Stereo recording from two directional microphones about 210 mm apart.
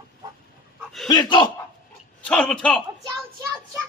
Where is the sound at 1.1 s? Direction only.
20° left (ahead or behind).